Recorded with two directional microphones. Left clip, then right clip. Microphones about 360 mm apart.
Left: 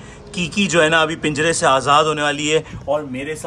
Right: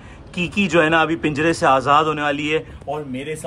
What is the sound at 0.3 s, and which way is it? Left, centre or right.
A man's voice, centre.